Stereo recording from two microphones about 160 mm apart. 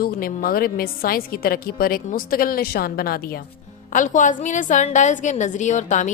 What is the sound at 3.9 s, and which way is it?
A woman's voice, 55° left (ahead or behind).